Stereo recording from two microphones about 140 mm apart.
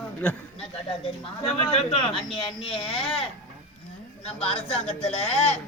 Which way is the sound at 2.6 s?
40° left (ahead or behind).